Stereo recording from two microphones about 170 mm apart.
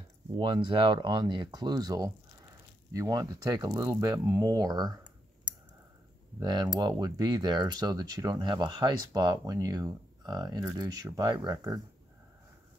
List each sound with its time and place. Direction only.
0.4 s speech: 30° right (ahead or behind)
6.4 s speech: 25° right (ahead or behind)